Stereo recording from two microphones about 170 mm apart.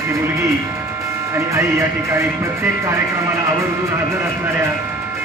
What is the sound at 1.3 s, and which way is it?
Speech, 15° right (ahead or behind).